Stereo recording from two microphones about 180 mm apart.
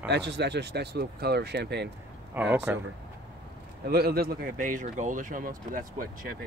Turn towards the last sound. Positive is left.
turn(degrees=-50)  # may be behind; listen again after turning